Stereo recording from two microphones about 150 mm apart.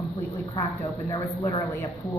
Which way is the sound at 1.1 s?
20° left (ahead or behind).